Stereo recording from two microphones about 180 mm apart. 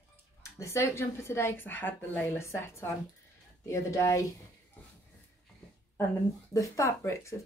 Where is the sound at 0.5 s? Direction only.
15° left (ahead or behind).